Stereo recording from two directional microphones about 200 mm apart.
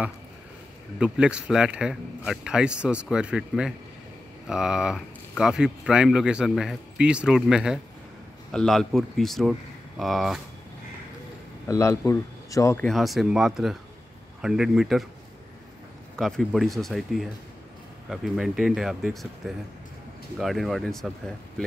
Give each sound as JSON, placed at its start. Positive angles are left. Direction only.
{"t": 0.9, "sound": "speech", "side_deg": -5}
{"t": 11.6, "sound": "speech", "side_deg": 15}
{"t": 12.8, "sound": "speech", "side_deg": 0}
{"t": 16.2, "sound": "speech", "side_deg": 0}